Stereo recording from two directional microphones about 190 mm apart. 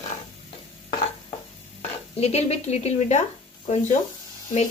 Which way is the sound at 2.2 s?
35° left (ahead or behind).